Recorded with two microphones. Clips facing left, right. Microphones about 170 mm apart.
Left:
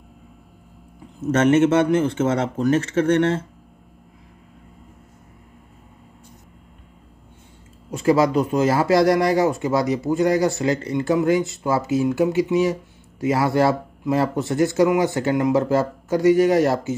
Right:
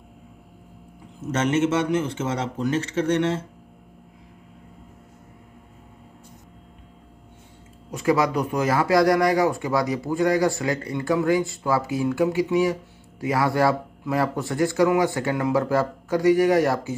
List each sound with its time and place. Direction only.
1.3 s speech: 55° left (ahead or behind)
7.9 s speech: 30° left (ahead or behind)